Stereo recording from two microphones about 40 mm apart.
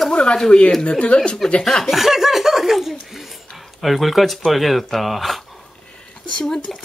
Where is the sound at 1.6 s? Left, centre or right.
Centre.